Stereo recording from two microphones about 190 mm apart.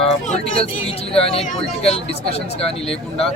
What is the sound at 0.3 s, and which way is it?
Speech, 30° left (ahead or behind).